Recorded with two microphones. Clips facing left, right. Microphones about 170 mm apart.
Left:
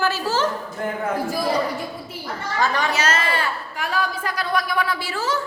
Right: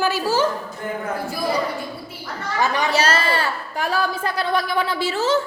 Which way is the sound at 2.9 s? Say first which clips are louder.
Right 3 dB; 30° right (ahead or behind).